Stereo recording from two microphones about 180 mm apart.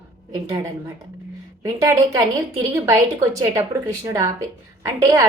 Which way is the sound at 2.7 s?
15° right (ahead or behind).